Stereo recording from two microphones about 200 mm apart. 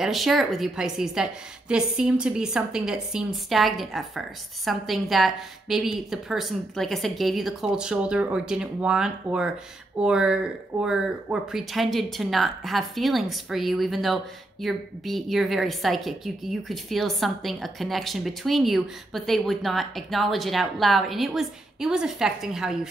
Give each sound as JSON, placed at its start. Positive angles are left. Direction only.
{"t": 0.0, "sound": "speech", "side_deg": 0}